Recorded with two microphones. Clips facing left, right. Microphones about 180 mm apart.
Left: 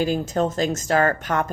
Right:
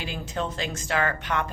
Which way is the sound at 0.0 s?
45° left (ahead or behind).